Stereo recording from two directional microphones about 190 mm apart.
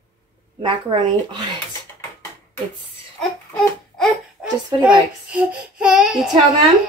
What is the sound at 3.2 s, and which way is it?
A child's voice, centre (ahead or behind).